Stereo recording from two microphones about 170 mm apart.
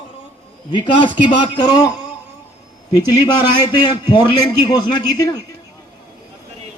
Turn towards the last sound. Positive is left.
turn(degrees=25)  # may be behind; listen again after turning